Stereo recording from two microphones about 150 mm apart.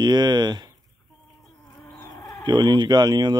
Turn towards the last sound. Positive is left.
turn(degrees=-30)  # may be behind; listen again after turning